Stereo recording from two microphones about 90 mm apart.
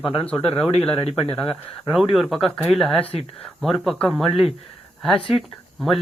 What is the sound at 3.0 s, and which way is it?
Speech, 90° left.